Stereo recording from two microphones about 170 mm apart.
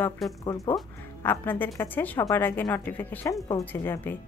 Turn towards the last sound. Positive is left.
turn(degrees=10)  # may be behind; listen again after turning